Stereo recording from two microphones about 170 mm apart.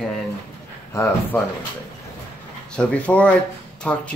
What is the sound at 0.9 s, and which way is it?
Speech, 15° left (ahead or behind).